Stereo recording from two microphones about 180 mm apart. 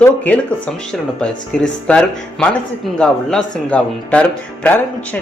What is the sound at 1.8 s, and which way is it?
Speech, 5° left (ahead or behind).